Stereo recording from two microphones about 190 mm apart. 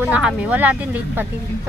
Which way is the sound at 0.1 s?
10° right (ahead or behind).